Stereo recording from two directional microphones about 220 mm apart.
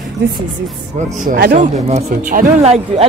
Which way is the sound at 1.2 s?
40° right (ahead or behind).